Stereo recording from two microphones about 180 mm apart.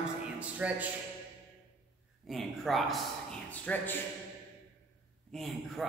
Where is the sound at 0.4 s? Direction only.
10° right (ahead or behind).